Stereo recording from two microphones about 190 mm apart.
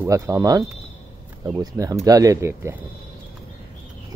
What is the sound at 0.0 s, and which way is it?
Speech, 15° right (ahead or behind).